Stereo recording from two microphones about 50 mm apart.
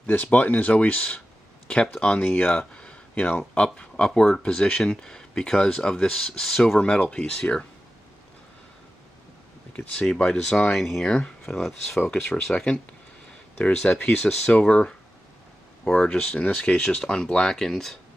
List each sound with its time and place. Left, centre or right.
0.0 s speech: left; by 7.6 s centre
10.0 s speech: centre
10.8 s speech: centre
11.1 s speech: centre
12.1 s speech: centre
13.6 s speech: left; by 17.9 s centre